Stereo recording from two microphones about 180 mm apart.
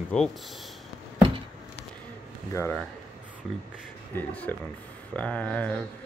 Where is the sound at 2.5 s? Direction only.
15° left (ahead or behind).